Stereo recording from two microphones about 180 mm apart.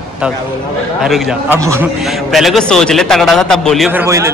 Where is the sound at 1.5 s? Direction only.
15° right (ahead or behind).